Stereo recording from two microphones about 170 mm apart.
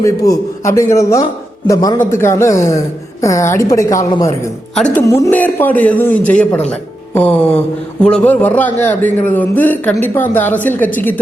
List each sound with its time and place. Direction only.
0.0 s a man's voice: 20° left (ahead or behind)
4.7 s a woman's voice: 5° left (ahead or behind)
5.0 s a man's voice: 15° left (ahead or behind)
6.7 s music: 10° left (ahead or behind)
8.0 s a man's voice: 5° left (ahead or behind)